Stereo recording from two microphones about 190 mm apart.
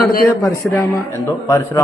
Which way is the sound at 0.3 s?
15° left (ahead or behind).